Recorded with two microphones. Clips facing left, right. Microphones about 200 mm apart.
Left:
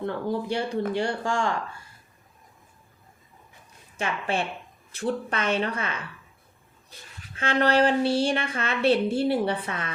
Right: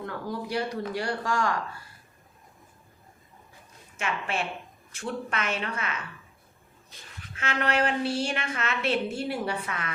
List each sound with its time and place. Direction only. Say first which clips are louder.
0.0 s speech: left 6 dB; 30° left (ahead or behind)
3.9 s a woman's voice: left 3 dB; 30° left (ahead or behind)
7.3 s a woman's voice: left 6 dB; 30° left (ahead or behind)